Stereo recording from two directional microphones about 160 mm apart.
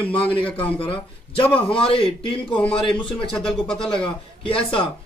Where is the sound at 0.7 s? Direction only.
35° left (ahead or behind).